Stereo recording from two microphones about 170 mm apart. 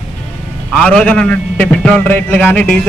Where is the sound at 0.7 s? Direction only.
5° left (ahead or behind).